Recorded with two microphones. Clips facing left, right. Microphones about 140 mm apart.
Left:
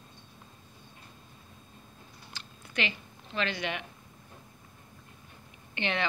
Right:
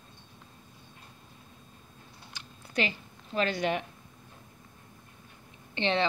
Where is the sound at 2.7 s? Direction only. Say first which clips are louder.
Right 3 dB; 40° right (ahead or behind).